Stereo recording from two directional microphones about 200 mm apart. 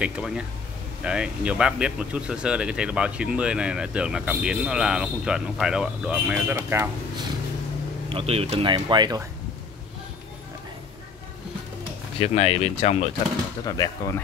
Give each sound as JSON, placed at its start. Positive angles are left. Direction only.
{"t": 0.0, "sound": "speech", "side_deg": -5}
{"t": 8.1, "sound": "speech", "side_deg": -30}
{"t": 12.2, "sound": "speech", "side_deg": 30}
{"t": 13.7, "sound": "speech", "side_deg": 15}